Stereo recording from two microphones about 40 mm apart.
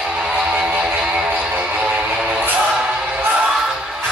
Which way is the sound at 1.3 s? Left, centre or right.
Right.